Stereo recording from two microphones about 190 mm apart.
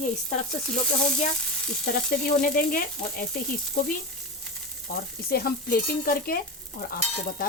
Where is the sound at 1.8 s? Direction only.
55° left (ahead or behind).